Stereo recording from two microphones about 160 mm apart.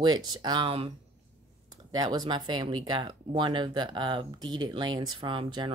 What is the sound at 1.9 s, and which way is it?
Speech, 25° right (ahead or behind).